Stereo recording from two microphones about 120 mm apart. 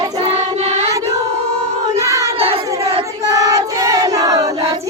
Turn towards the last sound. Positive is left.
turn(degrees=-30)  # may be behind; listen again after turning